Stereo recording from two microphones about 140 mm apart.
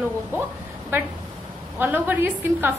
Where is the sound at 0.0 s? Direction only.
10° right (ahead or behind).